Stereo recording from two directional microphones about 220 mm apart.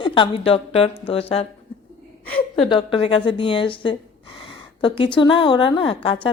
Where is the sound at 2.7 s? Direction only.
20° left (ahead or behind).